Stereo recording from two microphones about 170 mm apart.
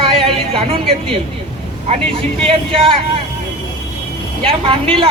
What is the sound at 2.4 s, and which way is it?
Speech, 35° right (ahead or behind).